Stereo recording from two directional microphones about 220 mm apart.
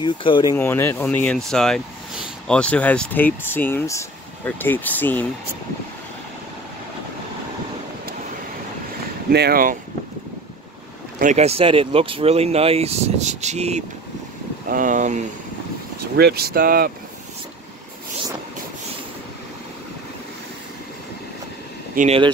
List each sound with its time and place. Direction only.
0.0 s speech: 20° left (ahead or behind)
0.6 s speech: 10° left (ahead or behind)
9.3 s speech: 45° right (ahead or behind)
11.1 s speech: 30° right (ahead or behind)
16.2 s speech: 45° right (ahead or behind)
21.9 s speech: 30° right (ahead or behind)